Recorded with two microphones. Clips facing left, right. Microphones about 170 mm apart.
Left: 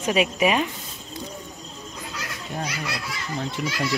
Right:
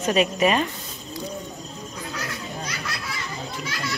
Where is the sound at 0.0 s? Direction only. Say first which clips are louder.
Right 1 dB; 10° left (ahead or behind).